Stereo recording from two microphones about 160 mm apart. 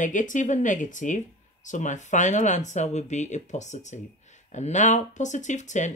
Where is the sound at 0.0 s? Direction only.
55° left (ahead or behind).